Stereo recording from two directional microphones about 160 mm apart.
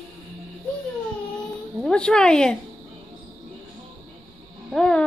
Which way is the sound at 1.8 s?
5° left (ahead or behind).